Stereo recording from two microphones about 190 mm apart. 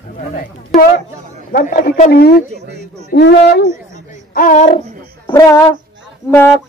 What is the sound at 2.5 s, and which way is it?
Speech, 60° right (ahead or behind).